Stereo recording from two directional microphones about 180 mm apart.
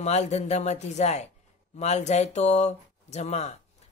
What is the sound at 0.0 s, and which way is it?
Speech, 40° left (ahead or behind).